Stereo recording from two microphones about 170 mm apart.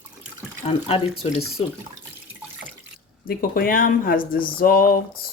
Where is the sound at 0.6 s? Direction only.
35° left (ahead or behind).